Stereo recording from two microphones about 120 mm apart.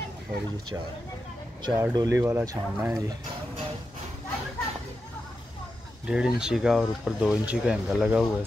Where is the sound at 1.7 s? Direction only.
25° right (ahead or behind).